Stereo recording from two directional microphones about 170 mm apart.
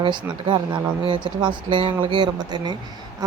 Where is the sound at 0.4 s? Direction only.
30° right (ahead or behind).